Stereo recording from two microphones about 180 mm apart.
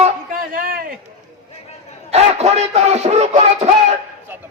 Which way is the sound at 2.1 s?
35° right (ahead or behind).